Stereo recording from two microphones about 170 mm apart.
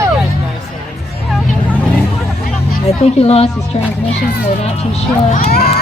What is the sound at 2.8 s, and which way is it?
Speech, 35° left (ahead or behind).